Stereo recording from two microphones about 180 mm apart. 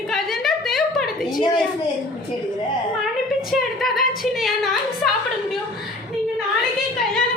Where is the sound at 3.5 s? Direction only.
Centre (ahead or behind).